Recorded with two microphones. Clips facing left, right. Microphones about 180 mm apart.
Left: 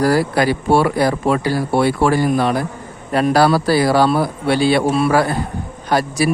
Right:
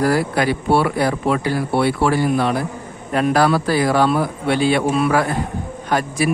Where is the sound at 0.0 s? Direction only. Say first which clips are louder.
Left 2 dB; 35° left (ahead or behind).